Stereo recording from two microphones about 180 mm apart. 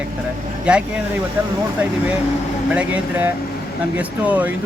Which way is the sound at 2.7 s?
5° right (ahead or behind).